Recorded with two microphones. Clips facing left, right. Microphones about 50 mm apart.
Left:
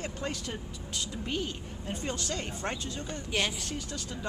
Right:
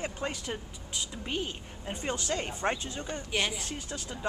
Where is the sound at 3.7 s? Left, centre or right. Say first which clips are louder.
Left 1 dB; right.